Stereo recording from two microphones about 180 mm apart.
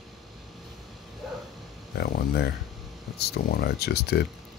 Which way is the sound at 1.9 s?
65° left (ahead or behind).